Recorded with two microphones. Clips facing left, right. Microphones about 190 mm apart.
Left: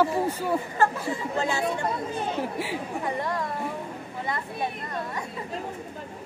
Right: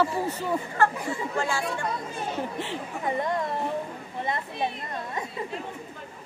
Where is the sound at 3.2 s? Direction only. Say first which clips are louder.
Right 2 dB; 20° right (ahead or behind).